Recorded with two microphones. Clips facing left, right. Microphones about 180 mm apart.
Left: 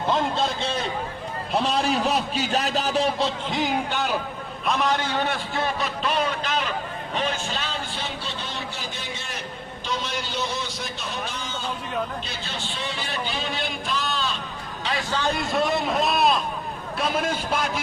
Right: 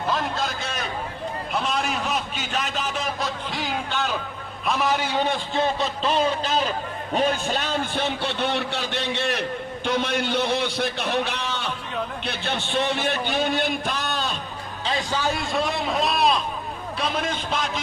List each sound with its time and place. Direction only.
0.1 s a sound: 25° left (ahead or behind)
1.5 s a man's voice: 35° left (ahead or behind); by 4.2 s 10° left (ahead or behind)
4.6 s a man's voice: centre (ahead or behind); by 6.7 s 30° right (ahead or behind)
7.1 s a man's voice: 45° right (ahead or behind)
15.1 s a man's voice: 5° right (ahead or behind)